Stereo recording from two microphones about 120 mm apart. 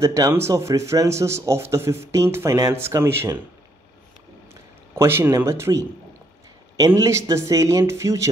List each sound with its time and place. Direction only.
0.0 s a man's voice: 25° right (ahead or behind)
4.9 s a man's voice: 20° right (ahead or behind)
7.0 s a man's voice: 25° right (ahead or behind)